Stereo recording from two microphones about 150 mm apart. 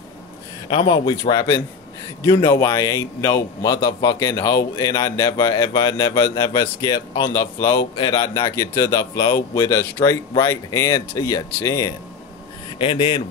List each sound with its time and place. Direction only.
0.7 s a man's voice: 35° left (ahead or behind)
12.7 s speech: 35° left (ahead or behind)